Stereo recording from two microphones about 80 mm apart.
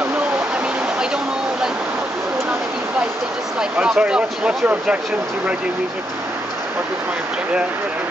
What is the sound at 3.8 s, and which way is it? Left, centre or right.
Speech, centre.